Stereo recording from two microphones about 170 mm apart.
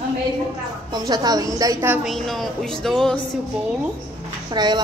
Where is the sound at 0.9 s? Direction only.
25° right (ahead or behind).